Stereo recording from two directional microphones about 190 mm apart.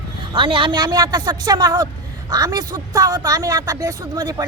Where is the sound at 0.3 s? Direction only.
25° right (ahead or behind).